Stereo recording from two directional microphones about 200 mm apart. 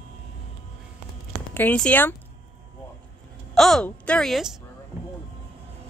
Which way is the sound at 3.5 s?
Centre (ahead or behind).